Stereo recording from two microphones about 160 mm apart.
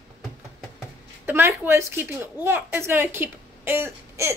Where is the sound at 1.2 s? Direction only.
15° right (ahead or behind).